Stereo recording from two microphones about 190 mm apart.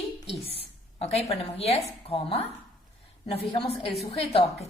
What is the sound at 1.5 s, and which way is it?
A woman's voice, 30° left (ahead or behind).